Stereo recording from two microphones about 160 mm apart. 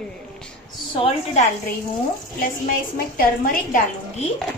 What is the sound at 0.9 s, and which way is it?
Speech, 40° left (ahead or behind).